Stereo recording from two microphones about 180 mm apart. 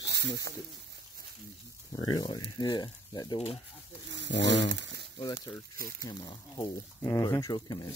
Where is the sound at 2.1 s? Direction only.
20° left (ahead or behind).